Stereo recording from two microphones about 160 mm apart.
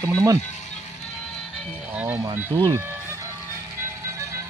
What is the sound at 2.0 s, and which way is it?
Speech, 10° right (ahead or behind).